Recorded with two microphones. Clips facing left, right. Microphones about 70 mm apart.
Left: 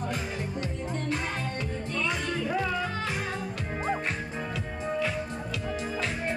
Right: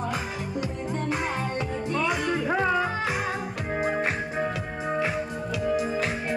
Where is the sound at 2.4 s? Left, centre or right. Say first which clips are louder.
Right 5 dB; right.